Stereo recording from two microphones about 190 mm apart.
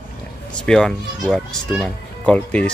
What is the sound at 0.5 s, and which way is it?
Speech, 5° left (ahead or behind).